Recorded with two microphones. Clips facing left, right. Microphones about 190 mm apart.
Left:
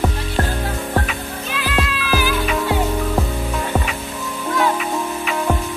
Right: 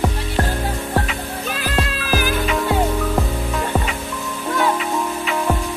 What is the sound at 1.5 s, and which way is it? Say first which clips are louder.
Music: left 1 dB; 45° right (ahead or behind).